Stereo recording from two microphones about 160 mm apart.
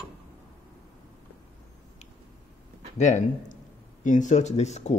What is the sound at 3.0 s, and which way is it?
Speech, 50° left (ahead or behind).